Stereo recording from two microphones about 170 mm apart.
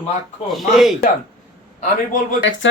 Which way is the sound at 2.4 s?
90° left.